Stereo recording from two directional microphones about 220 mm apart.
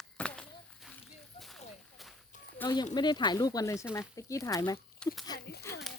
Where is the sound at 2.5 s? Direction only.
20° left (ahead or behind).